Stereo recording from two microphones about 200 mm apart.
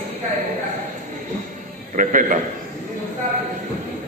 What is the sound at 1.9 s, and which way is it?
Speech, 40° right (ahead or behind).